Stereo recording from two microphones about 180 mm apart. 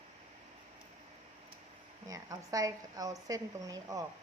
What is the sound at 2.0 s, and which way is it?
Speech, 20° right (ahead or behind).